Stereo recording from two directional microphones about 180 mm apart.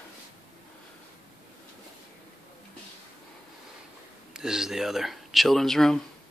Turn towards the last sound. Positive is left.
turn(degrees=0)  # may be behind; listen again after turning